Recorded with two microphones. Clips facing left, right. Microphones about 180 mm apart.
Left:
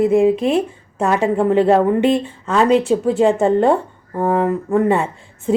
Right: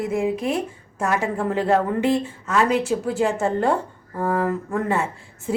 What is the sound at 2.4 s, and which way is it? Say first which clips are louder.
Speech: left 8 dB; 30° left (ahead or behind).